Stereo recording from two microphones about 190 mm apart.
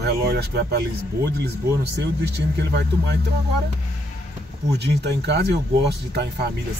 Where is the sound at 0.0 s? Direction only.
55° right (ahead or behind).